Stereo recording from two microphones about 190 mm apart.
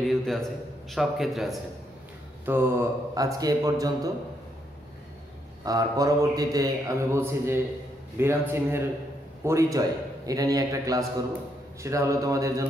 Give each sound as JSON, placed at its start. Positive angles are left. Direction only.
{"t": 0.0, "sound": "a man's voice", "side_deg": 0}
{"t": 2.4, "sound": "a man's voice", "side_deg": -10}
{"t": 5.7, "sound": "a man's voice", "side_deg": -20}